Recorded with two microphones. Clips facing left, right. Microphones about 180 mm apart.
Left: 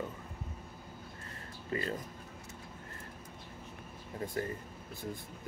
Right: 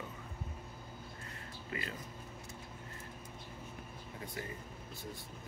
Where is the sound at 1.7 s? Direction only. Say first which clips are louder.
Left 7 dB; 40° left (ahead or behind).